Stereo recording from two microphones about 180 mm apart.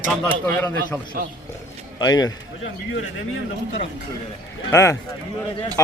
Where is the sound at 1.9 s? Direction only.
20° left (ahead or behind).